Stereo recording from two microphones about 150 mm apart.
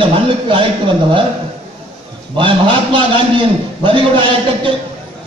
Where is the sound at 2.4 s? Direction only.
35° right (ahead or behind).